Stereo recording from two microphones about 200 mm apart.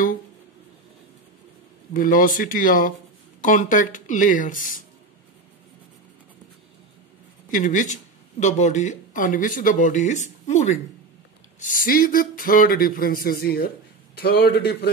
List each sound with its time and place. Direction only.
2.0 s speech: 45° left (ahead or behind)
7.5 s speech: 40° left (ahead or behind)